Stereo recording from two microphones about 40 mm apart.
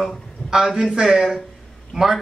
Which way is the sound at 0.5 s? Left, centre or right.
Centre.